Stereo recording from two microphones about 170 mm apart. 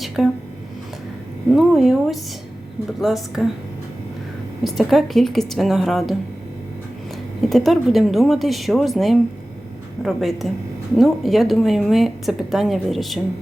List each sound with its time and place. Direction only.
0.2 s speech: centre (ahead or behind)
1.5 s speech: centre (ahead or behind)
4.6 s speech: centre (ahead or behind)
7.5 s speech: centre (ahead or behind)